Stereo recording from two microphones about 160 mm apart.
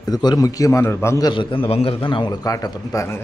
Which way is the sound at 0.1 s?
25° left (ahead or behind).